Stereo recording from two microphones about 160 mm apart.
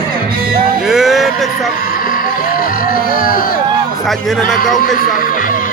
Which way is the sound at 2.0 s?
60° left (ahead or behind).